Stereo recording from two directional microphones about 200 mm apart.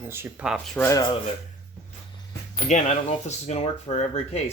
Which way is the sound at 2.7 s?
35° left (ahead or behind).